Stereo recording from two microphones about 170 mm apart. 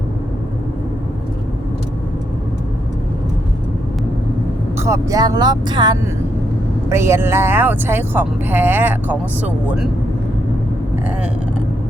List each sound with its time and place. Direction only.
4.8 s speech: 20° right (ahead or behind)